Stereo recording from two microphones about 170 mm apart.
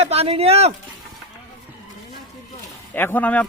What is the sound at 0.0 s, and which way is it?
Speech, 35° right (ahead or behind).